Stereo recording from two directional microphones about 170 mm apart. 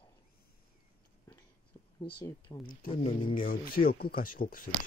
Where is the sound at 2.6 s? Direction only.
55° left (ahead or behind).